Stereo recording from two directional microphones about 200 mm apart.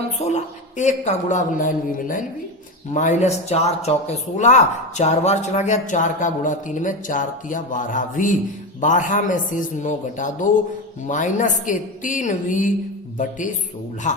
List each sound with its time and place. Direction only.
0.3 s speech: 35° left (ahead or behind)
14.0 s speech: 40° left (ahead or behind)